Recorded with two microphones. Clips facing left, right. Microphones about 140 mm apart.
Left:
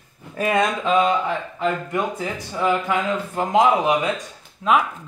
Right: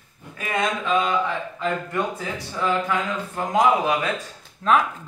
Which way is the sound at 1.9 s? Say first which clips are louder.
Left 2 dB; 15° left (ahead or behind).